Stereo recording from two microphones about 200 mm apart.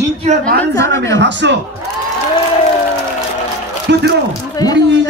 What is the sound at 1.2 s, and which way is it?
Speech, 60° right (ahead or behind).